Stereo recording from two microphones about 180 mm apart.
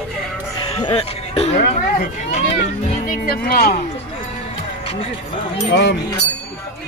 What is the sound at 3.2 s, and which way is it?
Speech, 55° left (ahead or behind).